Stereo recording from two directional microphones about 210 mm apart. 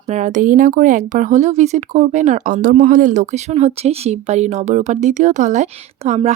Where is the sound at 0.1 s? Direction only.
35° right (ahead or behind).